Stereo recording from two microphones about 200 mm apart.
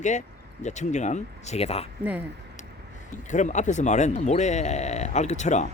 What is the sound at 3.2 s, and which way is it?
Speech, 35° left (ahead or behind).